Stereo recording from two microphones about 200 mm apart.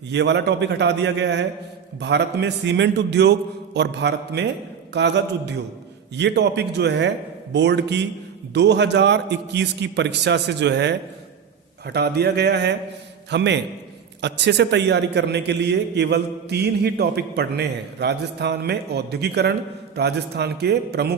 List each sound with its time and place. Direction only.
0.1 s a man's voice: 60° right (ahead or behind)